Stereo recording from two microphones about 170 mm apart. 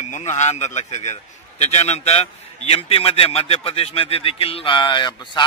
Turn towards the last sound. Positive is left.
turn(degrees=25)  # may be behind; listen again after turning